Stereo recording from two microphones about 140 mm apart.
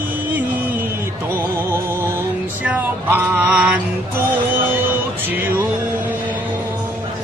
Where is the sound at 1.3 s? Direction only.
15° right (ahead or behind).